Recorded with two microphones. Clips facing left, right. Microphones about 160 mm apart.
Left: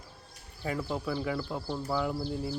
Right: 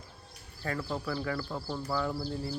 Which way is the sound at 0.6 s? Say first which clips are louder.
Left 2 dB; 15° left (ahead or behind).